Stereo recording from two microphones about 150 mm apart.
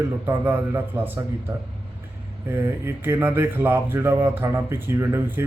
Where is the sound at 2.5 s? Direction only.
15° right (ahead or behind).